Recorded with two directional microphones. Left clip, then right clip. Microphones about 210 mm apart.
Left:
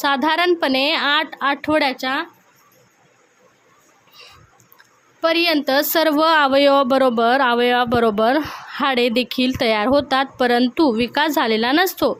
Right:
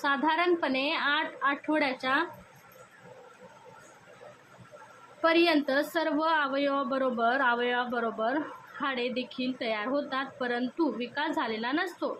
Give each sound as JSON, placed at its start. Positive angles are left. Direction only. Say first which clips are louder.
{"t": 0.0, "sound": "a woman's voice", "louder": "left 9 dB", "side_deg": 50}
{"t": 5.2, "sound": "speech", "louder": "left 7 dB", "side_deg": 50}